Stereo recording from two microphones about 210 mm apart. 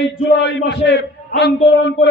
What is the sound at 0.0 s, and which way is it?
A man's voice, 55° left (ahead or behind).